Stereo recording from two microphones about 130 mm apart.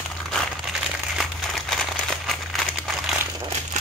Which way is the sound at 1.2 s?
Centre (ahead or behind).